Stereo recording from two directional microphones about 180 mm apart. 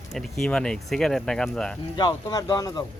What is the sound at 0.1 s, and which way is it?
Speech, centre (ahead or behind).